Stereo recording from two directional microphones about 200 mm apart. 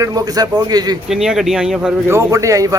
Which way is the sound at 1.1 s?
Centre (ahead or behind).